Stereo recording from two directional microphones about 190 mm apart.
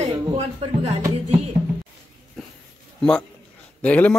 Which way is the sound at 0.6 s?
35° right (ahead or behind).